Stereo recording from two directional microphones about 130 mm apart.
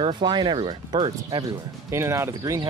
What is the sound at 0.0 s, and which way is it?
Speech, 35° right (ahead or behind).